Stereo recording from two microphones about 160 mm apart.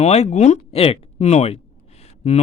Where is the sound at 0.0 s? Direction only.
40° left (ahead or behind).